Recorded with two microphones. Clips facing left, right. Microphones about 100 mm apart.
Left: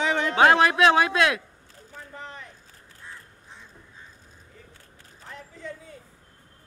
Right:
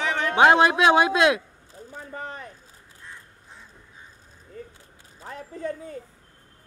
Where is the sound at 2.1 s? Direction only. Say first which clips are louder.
Right 5 dB; 45° right (ahead or behind).